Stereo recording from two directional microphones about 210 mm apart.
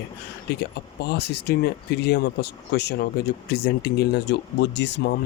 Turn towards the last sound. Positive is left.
turn(degrees=55)  # may be behind; listen again after turning